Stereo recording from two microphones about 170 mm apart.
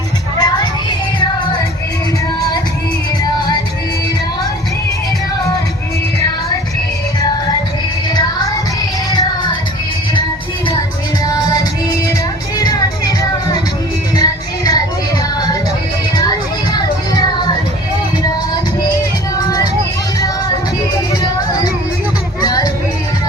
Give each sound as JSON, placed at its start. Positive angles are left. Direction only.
{"t": 0.3, "sound": "music", "side_deg": 25}
{"t": 9.1, "sound": "music", "side_deg": 25}
{"t": 12.5, "sound": "music", "side_deg": 20}
{"t": 22.4, "sound": "music", "side_deg": 20}